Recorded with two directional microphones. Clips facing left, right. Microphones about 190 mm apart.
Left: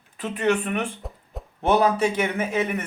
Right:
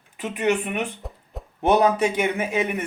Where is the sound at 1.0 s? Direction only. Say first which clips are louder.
Even; centre (ahead or behind).